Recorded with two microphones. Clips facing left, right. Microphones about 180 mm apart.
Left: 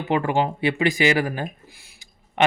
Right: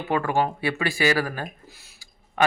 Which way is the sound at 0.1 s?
20° left (ahead or behind).